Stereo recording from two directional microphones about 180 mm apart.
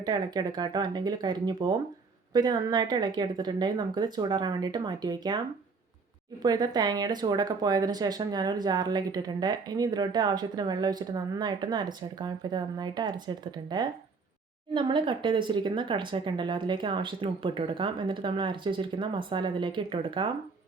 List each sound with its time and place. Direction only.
0.0 s speech: 25° right (ahead or behind)
6.4 s speech: 20° right (ahead or behind)